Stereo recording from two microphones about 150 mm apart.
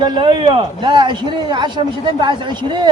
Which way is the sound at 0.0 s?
35° right (ahead or behind).